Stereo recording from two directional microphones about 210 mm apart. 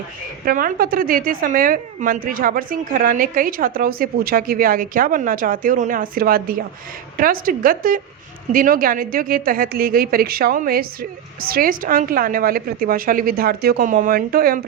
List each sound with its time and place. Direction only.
0.4 s a woman's voice: 45° right (ahead or behind)